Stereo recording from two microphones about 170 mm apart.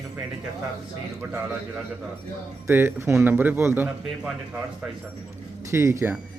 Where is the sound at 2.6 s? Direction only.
15° right (ahead or behind).